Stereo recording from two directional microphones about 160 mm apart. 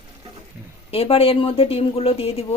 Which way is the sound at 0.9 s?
35° left (ahead or behind).